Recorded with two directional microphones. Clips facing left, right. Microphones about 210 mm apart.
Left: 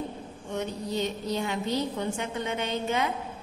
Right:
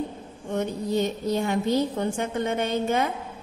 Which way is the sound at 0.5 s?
50° right (ahead or behind).